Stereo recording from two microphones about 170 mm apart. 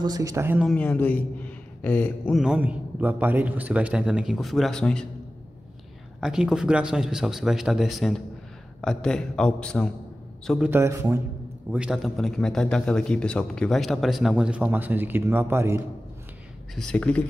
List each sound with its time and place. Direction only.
0.0 s speech: 20° right (ahead or behind)
0.6 s speech: 5° left (ahead or behind)
2.4 s a man's voice: 10° right (ahead or behind)
6.2 s a man's voice: 5° right (ahead or behind)
10.7 s a man's voice: 15° right (ahead or behind)
11.7 s a man's voice: 5° right (ahead or behind)
16.7 s speech: 5° left (ahead or behind)